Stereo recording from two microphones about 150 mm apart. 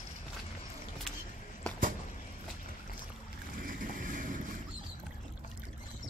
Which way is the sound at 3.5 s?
70° right (ahead or behind).